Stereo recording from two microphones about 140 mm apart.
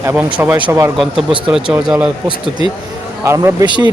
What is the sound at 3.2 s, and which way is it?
Speech, 20° right (ahead or behind).